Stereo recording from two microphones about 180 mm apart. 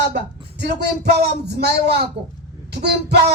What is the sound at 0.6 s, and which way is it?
Speech, 65° right (ahead or behind).